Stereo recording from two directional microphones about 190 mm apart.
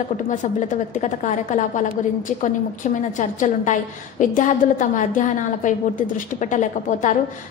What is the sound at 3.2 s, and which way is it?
A woman's voice, 40° left (ahead or behind).